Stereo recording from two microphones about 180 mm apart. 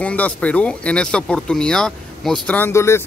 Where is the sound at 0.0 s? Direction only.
5° left (ahead or behind).